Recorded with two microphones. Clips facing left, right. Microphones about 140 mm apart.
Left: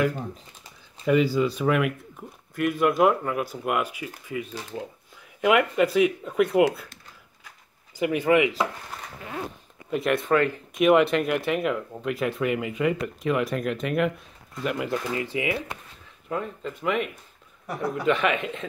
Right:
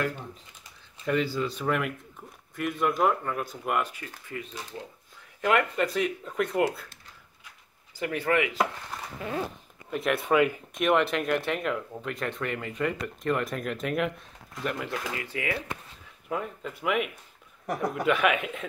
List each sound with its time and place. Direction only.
1.0 s speech: 10° left (ahead or behind)
8.0 s speech: 15° left (ahead or behind)
9.8 s speech: centre (ahead or behind)
10.7 s speech: 5° left (ahead or behind)
15.3 s speech: 15° left (ahead or behind)
16.3 s speech: 5° right (ahead or behind)
17.6 s speech: 50° right (ahead or behind)
18.0 s speech: 5° right (ahead or behind)